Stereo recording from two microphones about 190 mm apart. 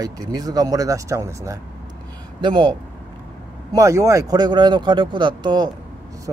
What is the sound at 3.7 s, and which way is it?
A man's voice, 15° right (ahead or behind).